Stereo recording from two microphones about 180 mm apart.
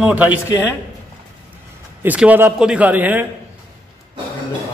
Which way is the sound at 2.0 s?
10° right (ahead or behind).